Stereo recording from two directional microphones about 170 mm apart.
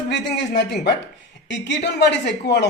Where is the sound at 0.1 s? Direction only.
80° left.